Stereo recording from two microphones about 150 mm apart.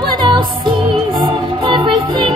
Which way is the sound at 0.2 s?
30° right (ahead or behind).